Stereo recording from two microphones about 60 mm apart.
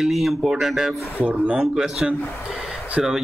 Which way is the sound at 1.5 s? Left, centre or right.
Centre.